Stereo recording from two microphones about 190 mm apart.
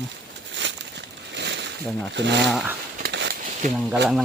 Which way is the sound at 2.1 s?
65° right (ahead or behind).